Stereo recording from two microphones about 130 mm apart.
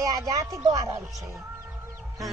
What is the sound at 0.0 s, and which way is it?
Speech, 25° right (ahead or behind).